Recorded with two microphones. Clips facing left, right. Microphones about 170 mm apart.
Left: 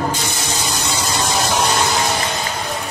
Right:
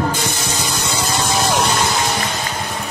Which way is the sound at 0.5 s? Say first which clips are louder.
Even; 55° right (ahead or behind).